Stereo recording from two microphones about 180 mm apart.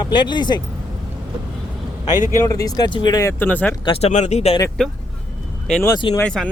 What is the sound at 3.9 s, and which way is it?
Speech, 35° left (ahead or behind).